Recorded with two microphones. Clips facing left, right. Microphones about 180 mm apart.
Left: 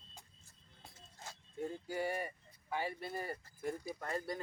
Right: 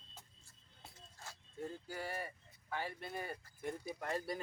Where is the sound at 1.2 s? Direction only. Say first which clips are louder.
Left 3 dB; 15° left (ahead or behind); by 3.9 s centre (ahead or behind).